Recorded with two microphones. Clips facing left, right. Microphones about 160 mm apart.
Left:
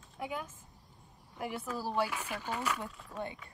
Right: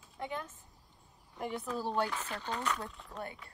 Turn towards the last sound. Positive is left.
turn(degrees=0)  # may be behind; listen again after turning